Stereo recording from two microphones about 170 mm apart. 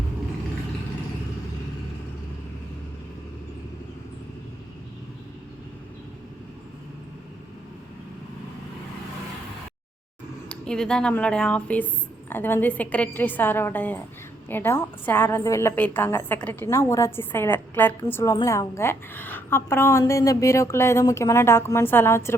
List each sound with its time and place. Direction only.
10.5 s a woman's voice: 5° left (ahead or behind)